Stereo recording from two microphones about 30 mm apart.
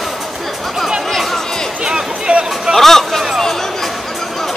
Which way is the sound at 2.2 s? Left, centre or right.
Right.